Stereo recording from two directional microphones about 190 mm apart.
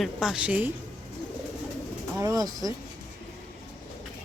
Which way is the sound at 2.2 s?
20° right (ahead or behind).